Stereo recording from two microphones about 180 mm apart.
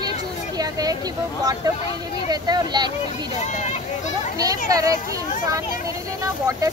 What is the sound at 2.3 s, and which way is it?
Speech, 25° right (ahead or behind).